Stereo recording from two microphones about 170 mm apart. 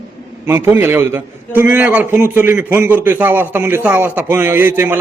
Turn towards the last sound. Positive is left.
turn(degrees=-10)  # may be behind; listen again after turning